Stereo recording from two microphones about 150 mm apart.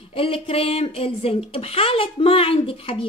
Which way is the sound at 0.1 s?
40° left (ahead or behind).